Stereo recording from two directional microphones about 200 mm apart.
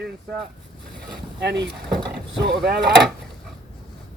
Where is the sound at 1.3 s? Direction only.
60° right (ahead or behind).